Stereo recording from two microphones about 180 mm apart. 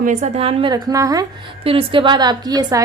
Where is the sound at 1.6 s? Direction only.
30° right (ahead or behind).